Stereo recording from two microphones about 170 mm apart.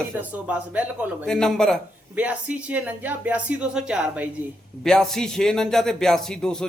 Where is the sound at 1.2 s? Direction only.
5° left (ahead or behind).